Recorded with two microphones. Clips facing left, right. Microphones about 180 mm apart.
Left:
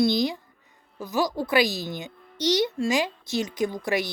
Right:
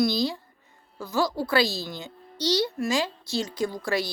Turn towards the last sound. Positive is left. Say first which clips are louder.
# left 1 dB
turn(degrees=20)  # may be behind; listen again after turning